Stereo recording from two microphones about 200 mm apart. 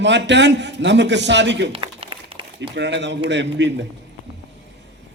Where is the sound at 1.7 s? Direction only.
25° right (ahead or behind).